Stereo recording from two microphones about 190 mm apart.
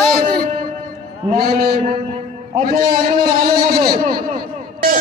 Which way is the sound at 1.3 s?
50° right (ahead or behind).